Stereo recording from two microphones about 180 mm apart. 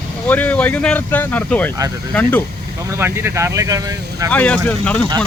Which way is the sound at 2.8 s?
15° right (ahead or behind).